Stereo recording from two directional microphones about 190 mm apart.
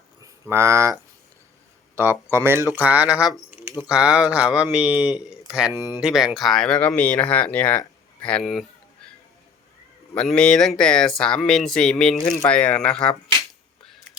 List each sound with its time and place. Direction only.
0.2 s speech: 15° right (ahead or behind)
2.0 s speech: 10° right (ahead or behind)
5.7 s speech: 15° left (ahead or behind)
6.0 s speech: 5° right (ahead or behind)
10.2 s speech: 5° left (ahead or behind)